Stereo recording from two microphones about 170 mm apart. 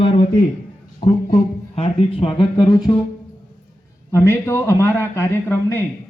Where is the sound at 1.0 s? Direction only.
55° left (ahead or behind).